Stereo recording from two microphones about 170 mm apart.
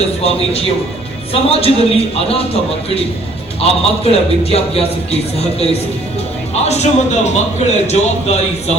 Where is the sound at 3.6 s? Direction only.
35° left (ahead or behind).